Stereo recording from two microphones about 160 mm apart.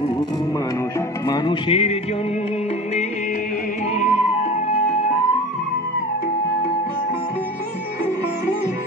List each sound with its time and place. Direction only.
1.2 s music: 25° left (ahead or behind)